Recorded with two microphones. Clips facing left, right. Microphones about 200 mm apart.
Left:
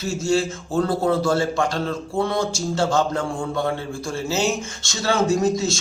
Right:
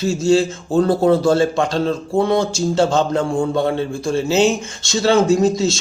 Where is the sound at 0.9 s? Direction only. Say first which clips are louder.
Right 6 dB; 30° right (ahead or behind).